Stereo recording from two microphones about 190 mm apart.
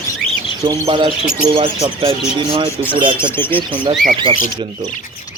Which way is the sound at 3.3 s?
10° left (ahead or behind).